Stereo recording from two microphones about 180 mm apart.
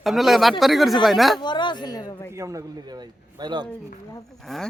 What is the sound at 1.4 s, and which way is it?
Speech, 25° left (ahead or behind).